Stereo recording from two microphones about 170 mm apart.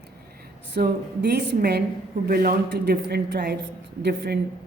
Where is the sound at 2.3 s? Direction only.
60° right (ahead or behind).